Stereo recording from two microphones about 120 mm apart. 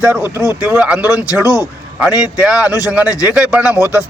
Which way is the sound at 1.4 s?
25° left (ahead or behind).